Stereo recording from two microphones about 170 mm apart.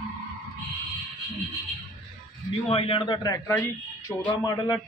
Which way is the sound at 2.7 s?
35° left (ahead or behind).